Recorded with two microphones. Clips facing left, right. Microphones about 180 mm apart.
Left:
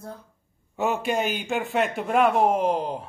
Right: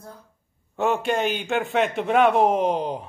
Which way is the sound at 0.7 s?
Centre (ahead or behind).